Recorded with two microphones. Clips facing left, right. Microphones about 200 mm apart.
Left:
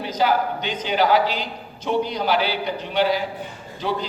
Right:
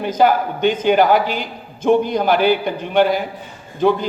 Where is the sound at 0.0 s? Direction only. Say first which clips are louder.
Right 5 dB; 50° right (ahead or behind).